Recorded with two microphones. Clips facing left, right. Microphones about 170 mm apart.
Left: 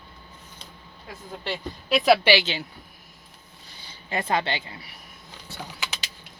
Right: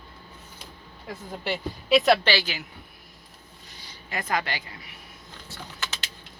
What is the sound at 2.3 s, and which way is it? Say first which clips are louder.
Speech: left 5 dB; 25° left (ahead or behind).